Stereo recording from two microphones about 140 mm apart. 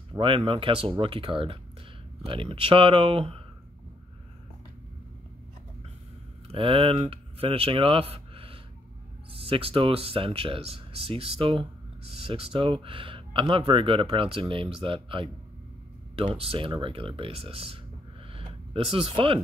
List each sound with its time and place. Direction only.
0.1 s speech: 30° right (ahead or behind)
6.4 s speech: 40° right (ahead or behind)
18.3 s a sound: 40° right (ahead or behind)